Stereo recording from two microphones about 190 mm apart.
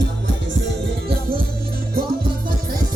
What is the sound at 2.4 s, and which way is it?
Music, 50° right (ahead or behind).